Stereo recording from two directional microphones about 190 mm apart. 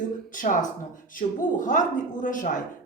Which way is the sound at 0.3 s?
45° left (ahead or behind).